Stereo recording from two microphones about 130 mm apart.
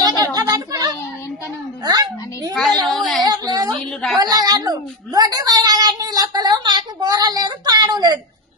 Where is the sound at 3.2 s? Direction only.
30° right (ahead or behind).